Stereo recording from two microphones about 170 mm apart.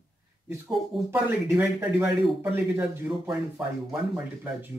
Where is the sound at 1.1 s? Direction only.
10° right (ahead or behind).